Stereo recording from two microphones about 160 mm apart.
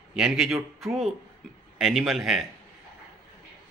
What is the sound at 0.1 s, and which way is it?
Speech, 5° right (ahead or behind).